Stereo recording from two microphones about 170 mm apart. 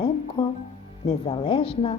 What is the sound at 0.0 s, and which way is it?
Music, 30° left (ahead or behind).